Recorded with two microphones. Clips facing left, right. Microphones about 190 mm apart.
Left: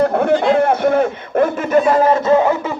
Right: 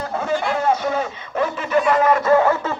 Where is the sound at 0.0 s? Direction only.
60° left (ahead or behind).